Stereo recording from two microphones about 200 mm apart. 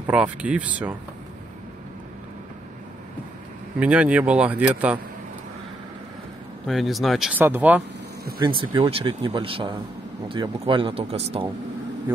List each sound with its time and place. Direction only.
0.0 s speech: 5° right (ahead or behind)
3.8 s speech: 5° right (ahead or behind)
6.7 s speech: centre (ahead or behind)
8.4 s speech: 25° right (ahead or behind)